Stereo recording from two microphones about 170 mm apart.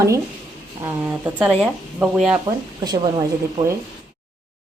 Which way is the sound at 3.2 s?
15° right (ahead or behind).